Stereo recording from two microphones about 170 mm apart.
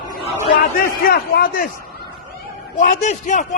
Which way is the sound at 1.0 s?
60° left (ahead or behind).